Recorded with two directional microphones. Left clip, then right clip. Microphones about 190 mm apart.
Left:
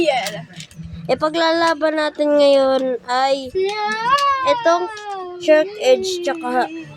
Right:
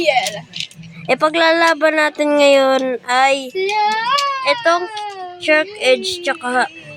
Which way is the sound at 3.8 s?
45° left (ahead or behind).